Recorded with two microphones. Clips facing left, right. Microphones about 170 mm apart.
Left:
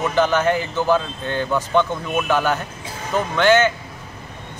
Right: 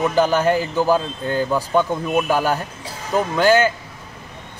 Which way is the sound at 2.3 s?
35° right (ahead or behind).